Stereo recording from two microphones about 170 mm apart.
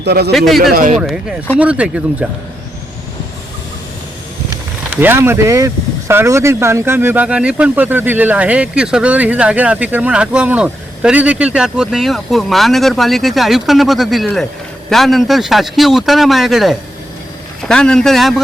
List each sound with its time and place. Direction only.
0.0 s a man's voice: 75° right (ahead or behind)
0.3 s a man's voice: centre (ahead or behind)
0.7 s speech: 55° right (ahead or behind)
0.9 s a man's voice: centre (ahead or behind)
4.9 s a man's voice: 15° right (ahead or behind)